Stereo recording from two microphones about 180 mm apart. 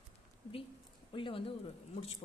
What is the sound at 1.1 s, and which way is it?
Speech, 30° left (ahead or behind).